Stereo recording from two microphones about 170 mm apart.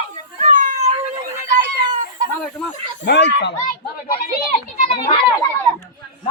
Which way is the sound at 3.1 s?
85° left.